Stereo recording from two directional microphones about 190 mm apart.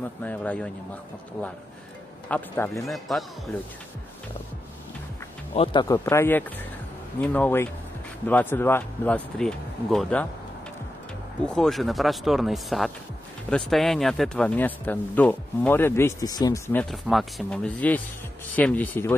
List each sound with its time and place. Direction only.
0.2 s speech: 10° left (ahead or behind)
2.2 s speech: 10° left (ahead or behind)
2.8 s speech: centre (ahead or behind)
5.5 s speech: 30° left (ahead or behind); by 10.2 s 5° left (ahead or behind)
11.4 s speech: 5° left (ahead or behind)
16.9 s speech: centre (ahead or behind)